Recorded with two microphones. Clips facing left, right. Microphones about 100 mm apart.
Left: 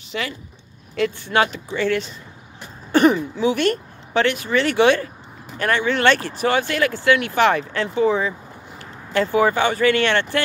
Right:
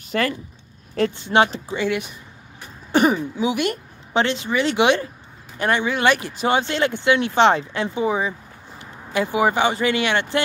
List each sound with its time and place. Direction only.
0.1 s speech: 50° right (ahead or behind)
1.1 s speech: 20° right (ahead or behind)
1.8 s speech: 15° right (ahead or behind)